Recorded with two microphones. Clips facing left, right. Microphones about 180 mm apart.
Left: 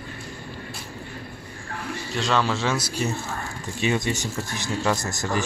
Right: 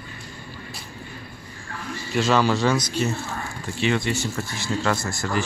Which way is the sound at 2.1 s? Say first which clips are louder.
Right 4 dB; 5° right (ahead or behind).